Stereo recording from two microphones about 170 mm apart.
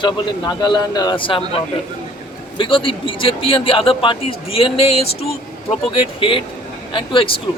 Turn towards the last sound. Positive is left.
turn(degrees=30)  # may be behind; listen again after turning